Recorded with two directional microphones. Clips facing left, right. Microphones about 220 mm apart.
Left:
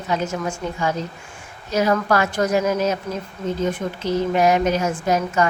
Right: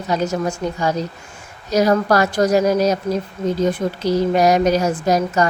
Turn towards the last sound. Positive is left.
turn(degrees=-35)  # may be behind; listen again after turning